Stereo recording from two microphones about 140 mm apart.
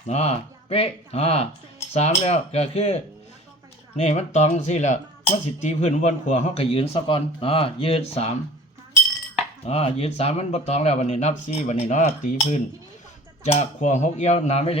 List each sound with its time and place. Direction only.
0.1 s speech: 45° left (ahead or behind)
9.6 s speech: 45° left (ahead or behind)